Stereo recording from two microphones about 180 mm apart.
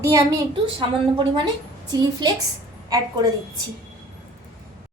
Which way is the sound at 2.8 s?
20° right (ahead or behind).